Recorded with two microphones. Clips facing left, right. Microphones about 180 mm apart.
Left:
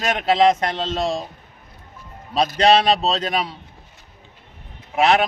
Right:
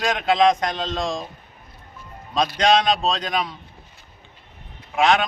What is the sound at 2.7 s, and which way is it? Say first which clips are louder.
Speech: left 2 dB; 30° left (ahead or behind).